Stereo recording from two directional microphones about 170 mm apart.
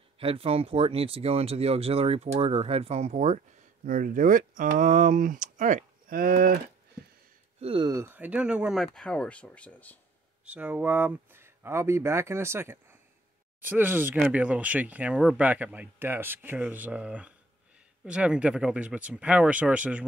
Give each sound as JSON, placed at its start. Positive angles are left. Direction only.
{"t": 0.2, "sound": "speech", "side_deg": -35}
{"t": 7.6, "sound": "speech", "side_deg": -25}
{"t": 10.4, "sound": "speech", "side_deg": -10}